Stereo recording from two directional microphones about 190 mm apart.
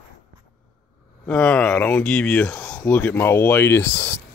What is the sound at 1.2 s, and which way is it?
Speech, 5° left (ahead or behind).